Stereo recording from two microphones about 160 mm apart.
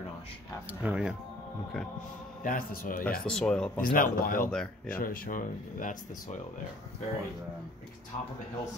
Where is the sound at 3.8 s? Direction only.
60° left (ahead or behind).